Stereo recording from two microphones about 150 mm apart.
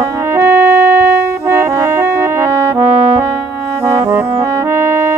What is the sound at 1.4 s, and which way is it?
Music, 15° right (ahead or behind).